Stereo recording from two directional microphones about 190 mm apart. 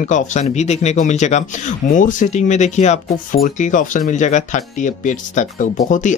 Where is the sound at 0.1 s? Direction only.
35° left (ahead or behind).